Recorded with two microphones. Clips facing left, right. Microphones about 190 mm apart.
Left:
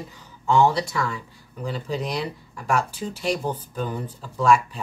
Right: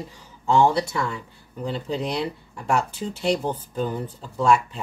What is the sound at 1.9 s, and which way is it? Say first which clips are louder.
Speech: right 1 dB; 25° right (ahead or behind).